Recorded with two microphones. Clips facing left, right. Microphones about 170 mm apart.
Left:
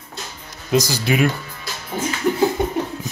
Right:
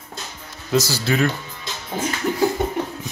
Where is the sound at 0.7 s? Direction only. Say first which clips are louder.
Left 2 dB; 15° left (ahead or behind).